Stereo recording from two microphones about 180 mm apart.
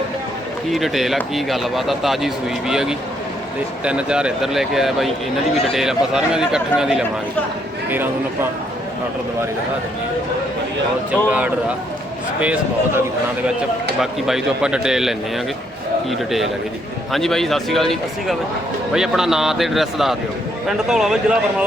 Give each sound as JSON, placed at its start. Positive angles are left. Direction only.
{"t": 0.7, "sound": "a man's voice", "side_deg": 0}
{"t": 11.3, "sound": "a man's voice", "side_deg": -5}
{"t": 14.0, "sound": "speech", "side_deg": 0}